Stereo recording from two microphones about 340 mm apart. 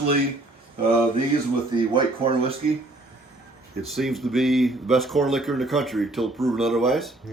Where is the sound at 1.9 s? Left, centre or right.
Centre.